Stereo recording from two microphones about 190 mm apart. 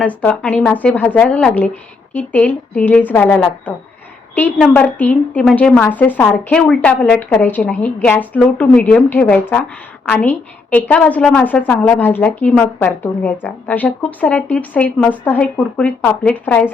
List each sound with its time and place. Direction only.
0.0 s a woman's voice: 5° left (ahead or behind)